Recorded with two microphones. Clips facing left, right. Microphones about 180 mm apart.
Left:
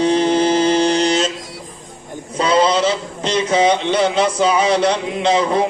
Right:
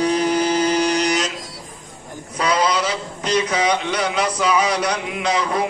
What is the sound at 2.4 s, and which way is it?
A man's voice, 25° left (ahead or behind).